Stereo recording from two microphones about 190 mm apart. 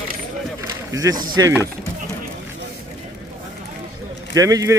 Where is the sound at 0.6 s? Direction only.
15° right (ahead or behind).